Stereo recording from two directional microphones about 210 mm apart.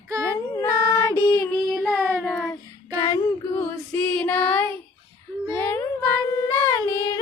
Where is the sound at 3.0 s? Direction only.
15° left (ahead or behind).